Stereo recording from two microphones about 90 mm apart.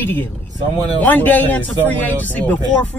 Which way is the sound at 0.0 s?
20° left (ahead or behind).